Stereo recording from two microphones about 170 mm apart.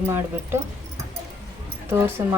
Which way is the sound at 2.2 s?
15° right (ahead or behind).